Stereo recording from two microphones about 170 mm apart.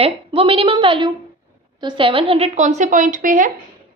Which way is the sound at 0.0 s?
35° right (ahead or behind).